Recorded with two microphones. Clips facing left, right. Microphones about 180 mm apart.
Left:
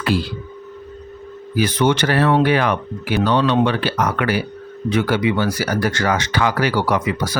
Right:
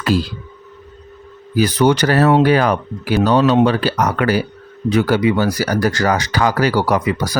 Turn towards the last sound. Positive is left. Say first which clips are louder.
# right 2 dB
turn(degrees=-40)  # may be behind; listen again after turning